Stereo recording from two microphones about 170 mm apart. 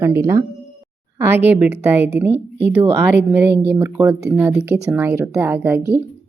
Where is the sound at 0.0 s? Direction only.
15° right (ahead or behind).